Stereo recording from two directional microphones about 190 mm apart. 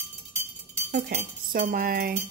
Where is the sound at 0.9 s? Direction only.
55° right (ahead or behind).